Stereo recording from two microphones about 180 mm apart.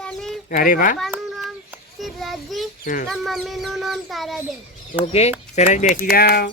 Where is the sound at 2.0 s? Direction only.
Centre (ahead or behind).